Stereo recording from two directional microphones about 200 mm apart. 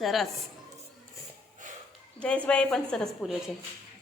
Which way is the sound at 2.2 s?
5° left (ahead or behind).